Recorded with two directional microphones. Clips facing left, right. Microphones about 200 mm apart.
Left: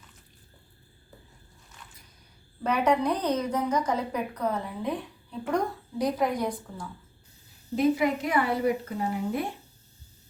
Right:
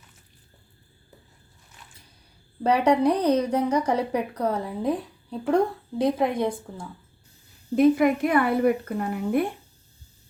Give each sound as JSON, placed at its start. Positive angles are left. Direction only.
{"t": 2.6, "sound": "a woman's voice", "side_deg": -30}
{"t": 7.8, "sound": "a woman's voice", "side_deg": -55}